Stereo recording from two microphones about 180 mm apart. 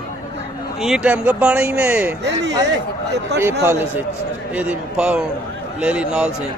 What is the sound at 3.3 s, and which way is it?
Speech, 70° right (ahead or behind).